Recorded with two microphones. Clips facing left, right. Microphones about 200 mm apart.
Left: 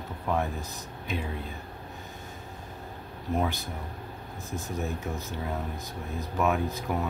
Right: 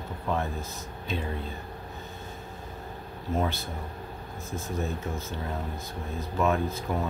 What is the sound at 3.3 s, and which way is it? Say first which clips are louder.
Speech: even; 15° left (ahead or behind).